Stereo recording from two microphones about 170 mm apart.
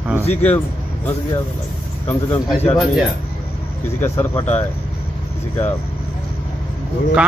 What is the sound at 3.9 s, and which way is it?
Speech, 15° left (ahead or behind).